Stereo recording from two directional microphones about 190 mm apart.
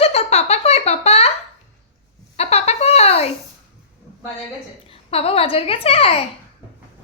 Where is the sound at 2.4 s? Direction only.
35° left (ahead or behind).